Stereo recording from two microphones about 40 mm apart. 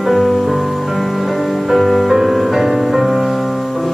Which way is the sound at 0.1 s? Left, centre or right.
Centre.